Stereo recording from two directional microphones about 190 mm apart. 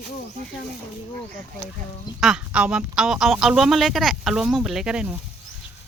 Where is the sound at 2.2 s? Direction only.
5° right (ahead or behind).